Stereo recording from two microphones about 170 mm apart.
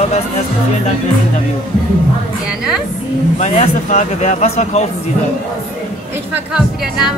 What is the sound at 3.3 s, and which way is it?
Speech, 45° left (ahead or behind).